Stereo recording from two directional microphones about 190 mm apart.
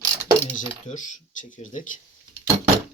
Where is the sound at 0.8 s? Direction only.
40° left (ahead or behind).